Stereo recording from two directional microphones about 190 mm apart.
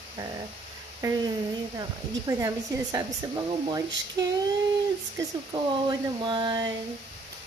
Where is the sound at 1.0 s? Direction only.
20° right (ahead or behind).